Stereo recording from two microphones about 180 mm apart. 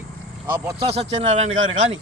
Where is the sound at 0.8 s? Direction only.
35° right (ahead or behind).